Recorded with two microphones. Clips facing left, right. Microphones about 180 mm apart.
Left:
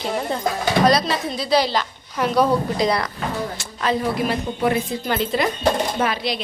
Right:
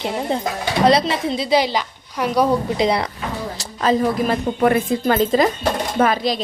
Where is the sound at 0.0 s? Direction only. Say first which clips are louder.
Right 1 dB; 25° right (ahead or behind).